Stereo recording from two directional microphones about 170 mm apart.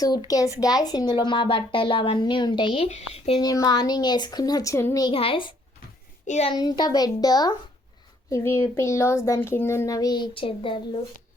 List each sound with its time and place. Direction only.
0.3 s speech: 20° left (ahead or behind); by 3.3 s 35° left (ahead or behind)
3.4 s speech: 20° left (ahead or behind)
5.0 s a child's voice: 35° left (ahead or behind)
6.2 s a child's voice: 45° left (ahead or behind)
6.5 s a child's voice: 25° left (ahead or behind)